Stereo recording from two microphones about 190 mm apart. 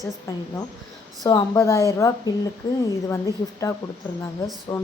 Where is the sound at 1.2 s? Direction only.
20° left (ahead or behind).